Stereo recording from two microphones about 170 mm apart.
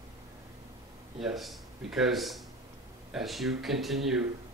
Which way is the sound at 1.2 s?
Centre (ahead or behind).